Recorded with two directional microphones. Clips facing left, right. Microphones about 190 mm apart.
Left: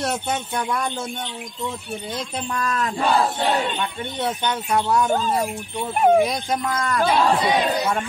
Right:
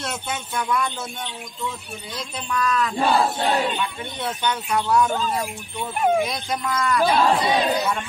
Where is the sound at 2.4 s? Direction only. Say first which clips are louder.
Right 3 dB; 40° left (ahead or behind).